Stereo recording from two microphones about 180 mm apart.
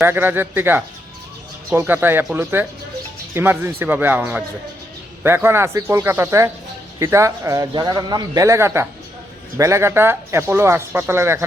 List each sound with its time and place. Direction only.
0.0 s a man's voice: 10° right (ahead or behind)